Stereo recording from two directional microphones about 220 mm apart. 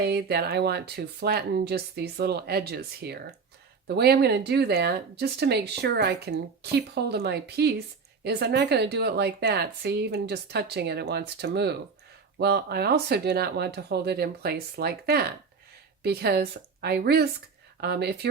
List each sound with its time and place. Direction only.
0.0 s speech: 45° right (ahead or behind)